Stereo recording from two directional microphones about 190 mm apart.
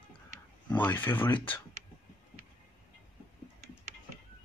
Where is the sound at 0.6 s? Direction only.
10° left (ahead or behind).